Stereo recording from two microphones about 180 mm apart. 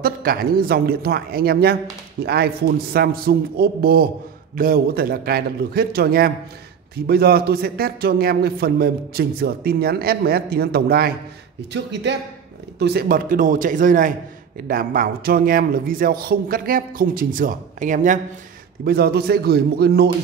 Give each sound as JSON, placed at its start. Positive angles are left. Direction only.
{"t": 0.0, "sound": "a man's voice", "side_deg": -55}
{"t": 11.7, "sound": "a man's voice", "side_deg": -70}
{"t": 18.9, "sound": "a man's voice", "side_deg": -60}